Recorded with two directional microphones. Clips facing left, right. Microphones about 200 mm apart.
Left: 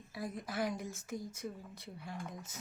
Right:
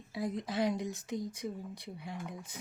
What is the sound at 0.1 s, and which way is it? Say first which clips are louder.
Speech: right 6 dB; 20° right (ahead or behind).